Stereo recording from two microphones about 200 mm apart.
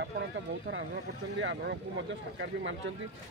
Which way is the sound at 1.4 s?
65° right (ahead or behind).